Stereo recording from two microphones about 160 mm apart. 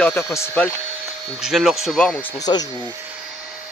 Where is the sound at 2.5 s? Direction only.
25° left (ahead or behind).